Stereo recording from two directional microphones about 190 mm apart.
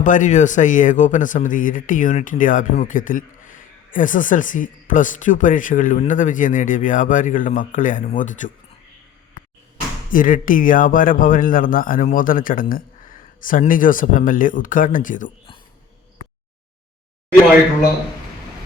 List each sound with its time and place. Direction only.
0.0 s speech: 40° left (ahead or behind)
10.1 s speech: 45° left (ahead or behind)